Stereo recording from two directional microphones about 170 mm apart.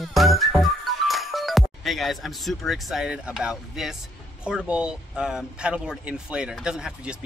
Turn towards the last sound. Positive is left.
turn(degrees=-5)  # may be behind; listen again after turning